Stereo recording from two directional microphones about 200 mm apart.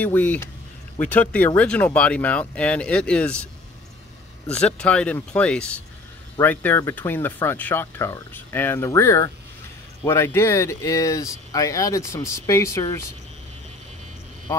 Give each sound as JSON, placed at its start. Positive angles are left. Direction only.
{"t": 0.0, "sound": "speech", "side_deg": 10}
{"t": 4.6, "sound": "speech", "side_deg": 5}